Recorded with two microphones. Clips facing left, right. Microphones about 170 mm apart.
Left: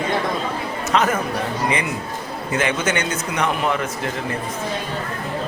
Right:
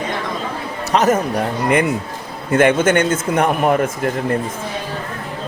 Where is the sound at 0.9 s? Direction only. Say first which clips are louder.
Right 5 dB; 40° right (ahead or behind).